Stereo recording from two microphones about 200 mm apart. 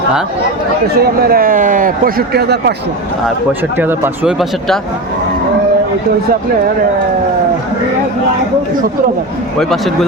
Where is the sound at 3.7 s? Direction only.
10° right (ahead or behind).